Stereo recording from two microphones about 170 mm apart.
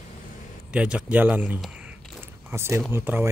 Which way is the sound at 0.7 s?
5° right (ahead or behind).